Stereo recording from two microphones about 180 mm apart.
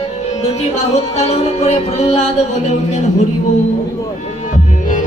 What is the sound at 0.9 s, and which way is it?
Music, 35° left (ahead or behind).